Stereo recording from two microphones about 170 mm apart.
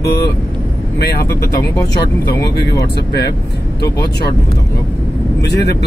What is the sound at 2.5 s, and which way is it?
Speech, 75° left (ahead or behind).